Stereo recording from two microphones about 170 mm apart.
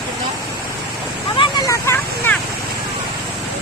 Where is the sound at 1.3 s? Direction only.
30° left (ahead or behind).